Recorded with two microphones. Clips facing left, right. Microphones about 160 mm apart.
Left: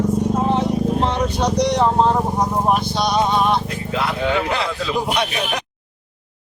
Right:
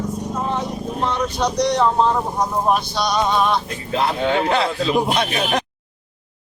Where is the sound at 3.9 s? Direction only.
30° right (ahead or behind).